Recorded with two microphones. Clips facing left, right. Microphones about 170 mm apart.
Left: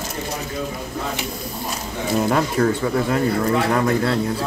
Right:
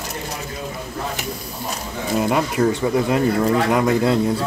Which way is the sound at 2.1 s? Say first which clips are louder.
Even; 5° right (ahead or behind).